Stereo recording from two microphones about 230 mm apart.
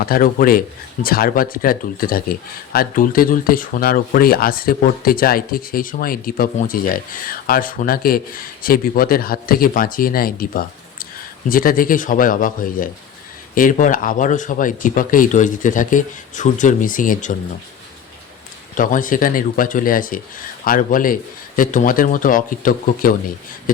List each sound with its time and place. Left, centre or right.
0.0 s speech: left
18.8 s speech: left